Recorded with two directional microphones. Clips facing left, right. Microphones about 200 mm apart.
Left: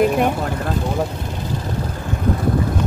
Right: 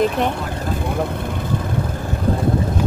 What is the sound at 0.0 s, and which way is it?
Speech, 10° left (ahead or behind).